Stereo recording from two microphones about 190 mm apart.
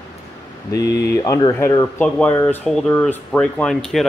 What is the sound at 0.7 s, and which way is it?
Speech, 60° left (ahead or behind).